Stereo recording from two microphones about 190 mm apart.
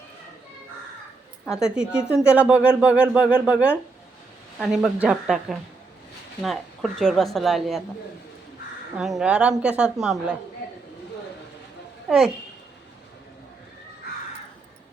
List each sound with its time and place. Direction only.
1.5 s speech: 5° right (ahead or behind)
9.0 s speech: 5° right (ahead or behind)
12.0 s a child's voice: centre (ahead or behind)